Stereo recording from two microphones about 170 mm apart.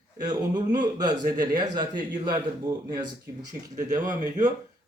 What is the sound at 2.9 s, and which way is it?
A man's voice, 20° right (ahead or behind).